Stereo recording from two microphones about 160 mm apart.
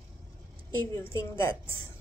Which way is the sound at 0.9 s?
15° left (ahead or behind).